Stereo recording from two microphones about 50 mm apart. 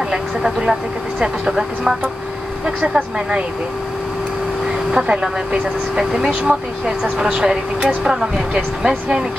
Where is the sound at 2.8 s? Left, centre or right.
Right.